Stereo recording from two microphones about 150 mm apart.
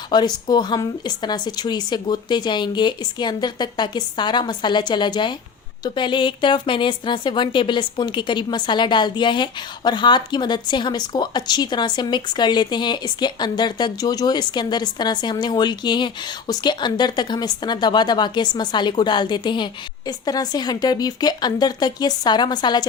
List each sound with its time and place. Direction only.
0.1 s a woman's voice: 25° left (ahead or behind)